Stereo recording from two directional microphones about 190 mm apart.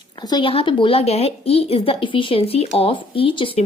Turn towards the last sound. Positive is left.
turn(degrees=30)  # may be behind; listen again after turning